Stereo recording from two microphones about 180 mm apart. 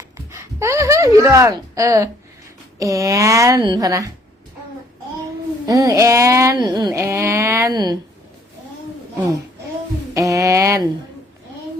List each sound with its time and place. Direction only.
0.3 s speech: 15° right (ahead or behind)
5.6 s speech: 20° right (ahead or behind)
10.2 s speech: 20° right (ahead or behind)